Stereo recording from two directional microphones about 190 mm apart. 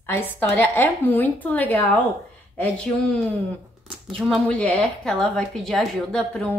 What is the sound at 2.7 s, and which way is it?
A woman's voice, 5° left (ahead or behind).